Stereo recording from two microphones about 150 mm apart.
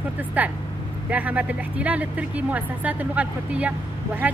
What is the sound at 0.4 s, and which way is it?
Speech, 10° right (ahead or behind).